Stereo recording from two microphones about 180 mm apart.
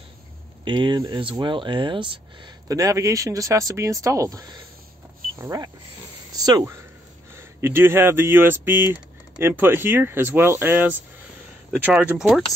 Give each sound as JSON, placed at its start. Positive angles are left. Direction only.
{"t": 0.7, "sound": "speech", "side_deg": -25}
{"t": 6.3, "sound": "a sound", "side_deg": -20}
{"t": 7.3, "sound": "speech", "side_deg": -10}